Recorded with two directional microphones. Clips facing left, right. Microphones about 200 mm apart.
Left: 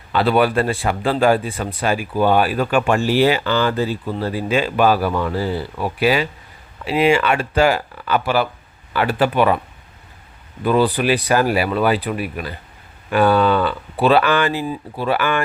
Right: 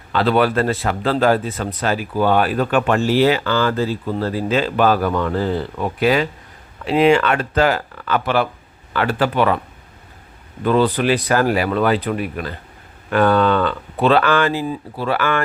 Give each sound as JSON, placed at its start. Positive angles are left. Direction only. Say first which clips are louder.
{"t": 0.1, "sound": "speech", "louder": "even", "side_deg": 10}
{"t": 10.6, "sound": "speech", "louder": "even", "side_deg": 10}